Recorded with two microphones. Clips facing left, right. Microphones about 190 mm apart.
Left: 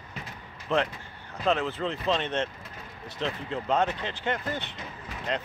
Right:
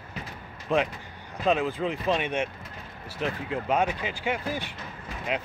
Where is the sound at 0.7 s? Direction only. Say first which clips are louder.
Right 1 dB; 15° right (ahead or behind).